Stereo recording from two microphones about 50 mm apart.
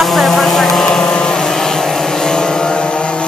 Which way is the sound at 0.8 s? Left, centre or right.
Centre.